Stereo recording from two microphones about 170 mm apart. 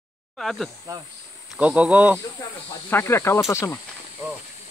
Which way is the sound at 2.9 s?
15° left (ahead or behind).